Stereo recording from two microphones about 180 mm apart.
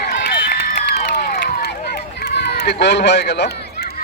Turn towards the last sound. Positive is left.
turn(degrees=65)  # may be behind; listen again after turning